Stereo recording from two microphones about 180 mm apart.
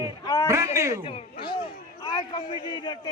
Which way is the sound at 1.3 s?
60° left (ahead or behind).